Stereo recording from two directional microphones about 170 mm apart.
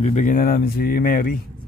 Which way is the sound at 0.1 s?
50° left (ahead or behind).